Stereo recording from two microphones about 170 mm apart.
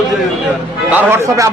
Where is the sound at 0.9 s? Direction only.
10° right (ahead or behind).